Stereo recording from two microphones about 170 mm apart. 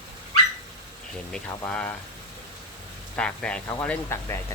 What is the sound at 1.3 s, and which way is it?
Speech, 5° left (ahead or behind).